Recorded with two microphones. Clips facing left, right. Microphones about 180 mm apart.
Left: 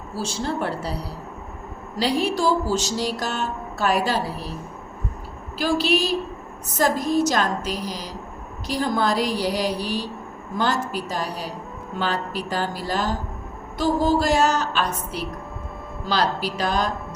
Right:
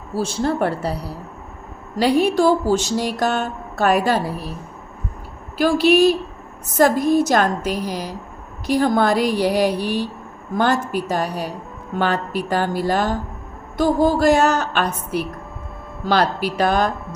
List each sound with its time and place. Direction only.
0.2 s speech: 55° right (ahead or behind)
2.0 s speech: 55° right (ahead or behind)
5.5 s speech: 55° right (ahead or behind)